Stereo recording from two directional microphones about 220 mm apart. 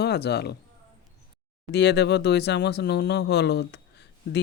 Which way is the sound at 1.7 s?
50° left (ahead or behind).